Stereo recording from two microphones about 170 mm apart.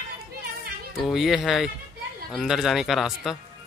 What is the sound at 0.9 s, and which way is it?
Speech, centre (ahead or behind).